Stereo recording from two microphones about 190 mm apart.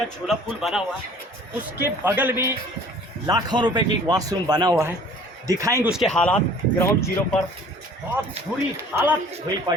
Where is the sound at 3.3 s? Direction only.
20° right (ahead or behind).